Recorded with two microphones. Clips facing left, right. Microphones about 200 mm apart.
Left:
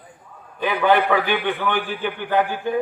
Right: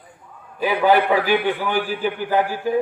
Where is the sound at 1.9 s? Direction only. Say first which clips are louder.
Right 2 dB; 35° right (ahead or behind).